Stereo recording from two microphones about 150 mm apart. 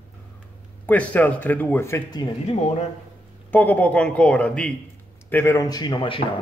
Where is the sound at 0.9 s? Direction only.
10° left (ahead or behind).